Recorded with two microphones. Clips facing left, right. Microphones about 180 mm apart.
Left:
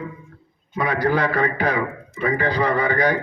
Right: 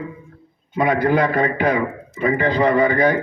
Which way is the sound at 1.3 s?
20° right (ahead or behind).